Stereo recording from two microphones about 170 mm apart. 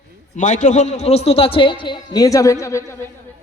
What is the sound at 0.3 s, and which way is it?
A man's voice, 45° left (ahead or behind).